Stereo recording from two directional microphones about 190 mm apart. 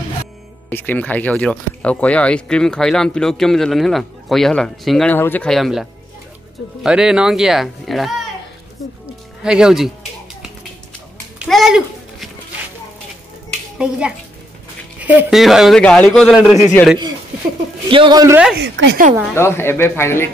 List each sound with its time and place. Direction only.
0.7 s speech: 10° left (ahead or behind)
9.4 s speech: 5° right (ahead or behind)
11.3 s a sound: centre (ahead or behind)
13.7 s speech: 5° right (ahead or behind)
17.8 s a man's voice: 25° right (ahead or behind)
18.6 s a woman's voice: 65° right (ahead or behind)
19.3 s speech: 15° left (ahead or behind)